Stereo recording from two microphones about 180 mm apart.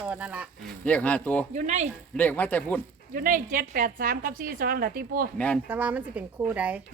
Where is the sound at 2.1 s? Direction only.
10° left (ahead or behind).